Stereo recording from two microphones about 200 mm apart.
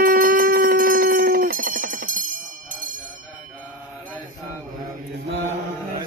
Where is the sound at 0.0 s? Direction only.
45° right (ahead or behind).